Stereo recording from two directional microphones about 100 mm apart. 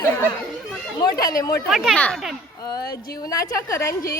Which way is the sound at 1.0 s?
40° left (ahead or behind).